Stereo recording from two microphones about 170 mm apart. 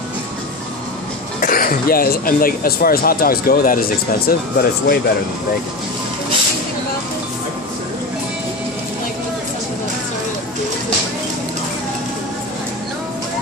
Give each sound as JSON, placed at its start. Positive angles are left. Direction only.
{"t": 1.4, "sound": "speech", "side_deg": 55}